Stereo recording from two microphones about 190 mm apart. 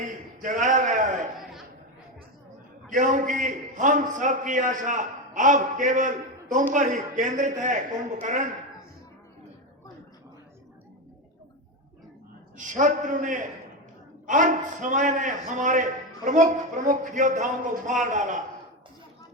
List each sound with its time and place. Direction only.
0.4 s a sound: 40° right (ahead or behind)
2.9 s a man's voice: 40° right (ahead or behind)
12.5 s a man's voice: 40° right (ahead or behind)